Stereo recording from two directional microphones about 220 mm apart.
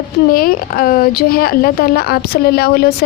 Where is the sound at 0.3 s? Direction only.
40° left (ahead or behind).